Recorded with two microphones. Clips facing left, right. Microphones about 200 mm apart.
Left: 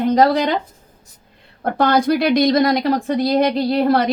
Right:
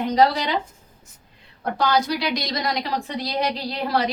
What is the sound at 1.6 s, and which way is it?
Speech, 55° left (ahead or behind).